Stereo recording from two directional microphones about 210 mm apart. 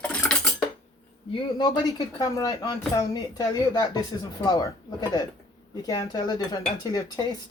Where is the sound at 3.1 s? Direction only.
15° left (ahead or behind).